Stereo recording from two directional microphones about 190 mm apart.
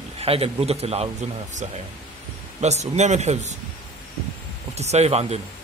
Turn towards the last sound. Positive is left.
turn(degrees=-35)  # may be behind; listen again after turning